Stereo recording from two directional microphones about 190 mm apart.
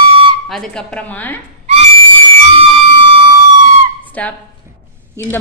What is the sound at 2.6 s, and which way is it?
Siren, 30° right (ahead or behind).